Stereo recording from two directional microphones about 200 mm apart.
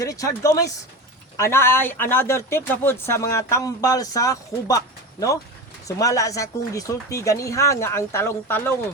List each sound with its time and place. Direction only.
0.0 s speech: 15° left (ahead or behind)
6.0 s speech: 15° left (ahead or behind)